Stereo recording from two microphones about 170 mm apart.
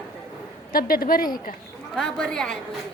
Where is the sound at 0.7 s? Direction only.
60° left (ahead or behind).